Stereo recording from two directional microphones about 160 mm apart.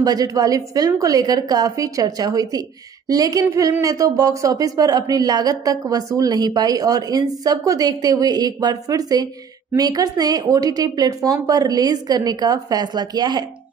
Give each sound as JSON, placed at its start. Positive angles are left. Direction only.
{"t": 0.0, "sound": "a woman's voice", "side_deg": -25}